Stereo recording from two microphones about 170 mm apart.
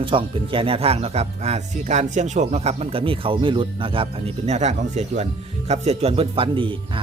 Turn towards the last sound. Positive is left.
turn(degrees=-30)  # may be behind; listen again after turning